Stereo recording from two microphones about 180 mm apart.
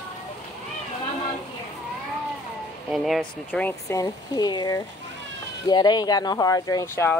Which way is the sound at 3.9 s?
20° left (ahead or behind).